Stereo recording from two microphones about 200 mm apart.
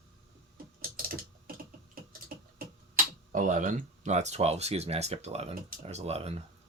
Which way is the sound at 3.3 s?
40° right (ahead or behind).